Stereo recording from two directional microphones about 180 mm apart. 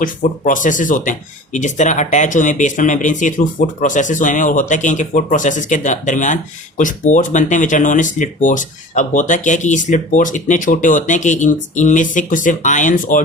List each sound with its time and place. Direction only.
0.0 s speech: 45° left (ahead or behind)